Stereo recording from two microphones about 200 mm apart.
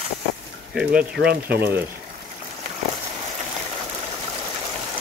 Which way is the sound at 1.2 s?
55° right (ahead or behind).